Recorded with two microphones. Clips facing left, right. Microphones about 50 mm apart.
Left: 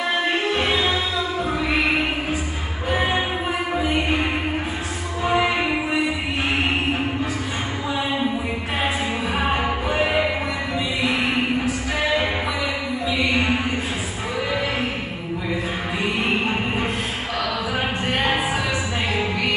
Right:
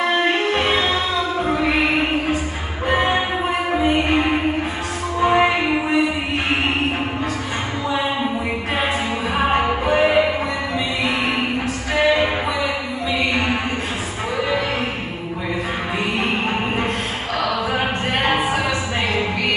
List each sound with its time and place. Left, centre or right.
0.2 s music: right
2.9 s music: right
9.8 s music: right
12.0 s music: right
13.3 s a sound: right
17.7 s music: right